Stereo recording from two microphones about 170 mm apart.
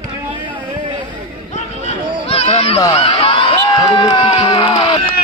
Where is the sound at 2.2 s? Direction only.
35° left (ahead or behind).